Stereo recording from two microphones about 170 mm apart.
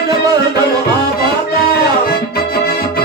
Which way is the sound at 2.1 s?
65° left (ahead or behind).